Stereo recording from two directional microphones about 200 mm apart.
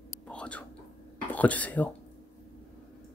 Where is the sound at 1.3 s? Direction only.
5° left (ahead or behind).